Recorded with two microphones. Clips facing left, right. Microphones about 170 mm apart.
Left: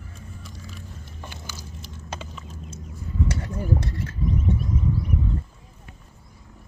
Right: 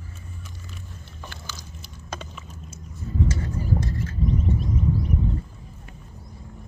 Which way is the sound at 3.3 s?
65° left (ahead or behind).